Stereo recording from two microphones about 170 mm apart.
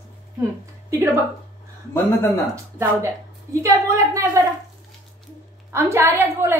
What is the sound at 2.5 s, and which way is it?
A woman's voice, 15° right (ahead or behind).